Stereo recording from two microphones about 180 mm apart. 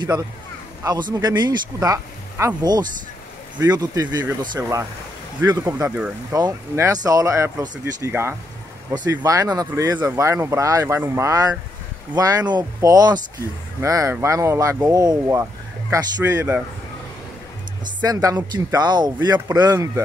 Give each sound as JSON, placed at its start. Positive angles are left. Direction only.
{"t": 1.1, "sound": "speech", "side_deg": -25}
{"t": 6.3, "sound": "speech", "side_deg": -20}
{"t": 18.0, "sound": "speech", "side_deg": -20}